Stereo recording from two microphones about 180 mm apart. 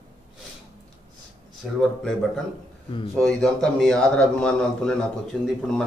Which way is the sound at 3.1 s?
5° left (ahead or behind).